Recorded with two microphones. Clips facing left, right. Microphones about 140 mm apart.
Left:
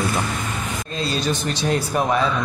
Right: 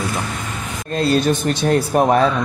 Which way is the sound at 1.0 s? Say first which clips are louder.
Right 8 dB; 55° right (ahead or behind).